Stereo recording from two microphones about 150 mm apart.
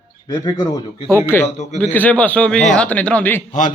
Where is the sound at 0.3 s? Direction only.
20° left (ahead or behind).